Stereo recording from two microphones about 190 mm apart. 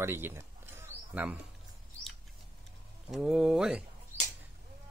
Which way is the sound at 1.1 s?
10° right (ahead or behind).